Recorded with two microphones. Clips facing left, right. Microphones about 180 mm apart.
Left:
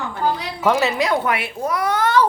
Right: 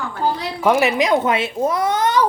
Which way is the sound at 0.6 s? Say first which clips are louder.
Right 2 dB; 15° right (ahead or behind).